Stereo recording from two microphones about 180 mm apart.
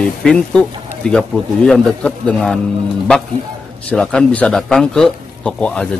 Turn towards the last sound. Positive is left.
turn(degrees=5)  # may be behind; listen again after turning